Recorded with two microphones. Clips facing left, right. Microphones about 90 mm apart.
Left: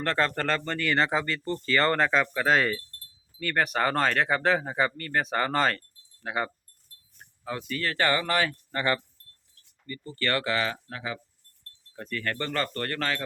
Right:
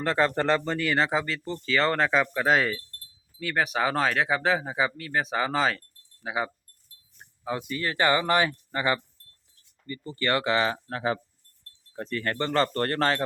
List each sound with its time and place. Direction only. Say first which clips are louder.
0.0 s speech: right 3 dB; 15° right (ahead or behind)
7.2 s speech: right 3 dB; 20° right (ahead or behind)
10.8 s speech: right 7 dB; 40° right (ahead or behind)
11.9 s speech: right 3 dB; 25° right (ahead or behind)